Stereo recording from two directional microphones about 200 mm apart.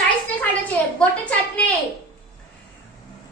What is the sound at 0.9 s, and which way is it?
Speech, 5° left (ahead or behind).